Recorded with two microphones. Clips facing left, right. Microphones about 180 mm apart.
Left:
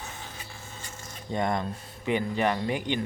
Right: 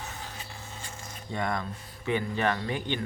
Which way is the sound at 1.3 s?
20° left (ahead or behind).